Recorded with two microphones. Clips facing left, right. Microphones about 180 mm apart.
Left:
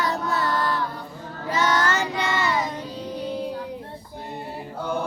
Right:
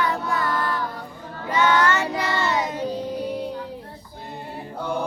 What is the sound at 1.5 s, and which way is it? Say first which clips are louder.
Child singing: right 3 dB; 40° left (ahead or behind).